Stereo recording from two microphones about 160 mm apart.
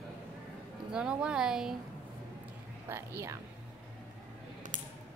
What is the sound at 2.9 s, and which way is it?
Speech, 15° right (ahead or behind).